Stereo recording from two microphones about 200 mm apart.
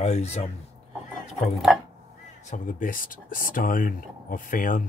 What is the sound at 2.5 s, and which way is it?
Speech, 40° left (ahead or behind).